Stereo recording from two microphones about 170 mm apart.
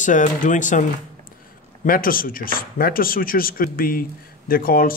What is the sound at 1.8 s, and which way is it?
A man's voice, 55° left (ahead or behind).